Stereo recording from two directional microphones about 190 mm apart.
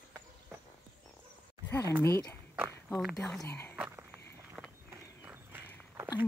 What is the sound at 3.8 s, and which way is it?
Walk, 10° right (ahead or behind).